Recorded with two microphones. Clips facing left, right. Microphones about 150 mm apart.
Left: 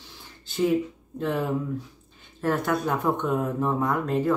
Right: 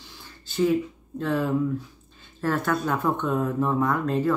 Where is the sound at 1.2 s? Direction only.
20° left (ahead or behind).